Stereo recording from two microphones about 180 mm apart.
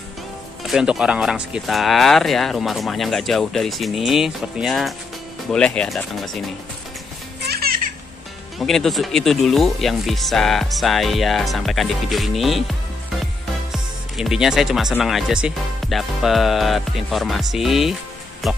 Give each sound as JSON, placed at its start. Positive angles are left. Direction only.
{"t": 0.7, "sound": "speech", "side_deg": -5}
{"t": 7.4, "sound": "baby laughter", "side_deg": -60}
{"t": 8.5, "sound": "speech", "side_deg": 0}